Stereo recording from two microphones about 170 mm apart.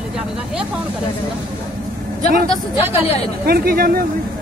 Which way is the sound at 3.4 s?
60° right (ahead or behind).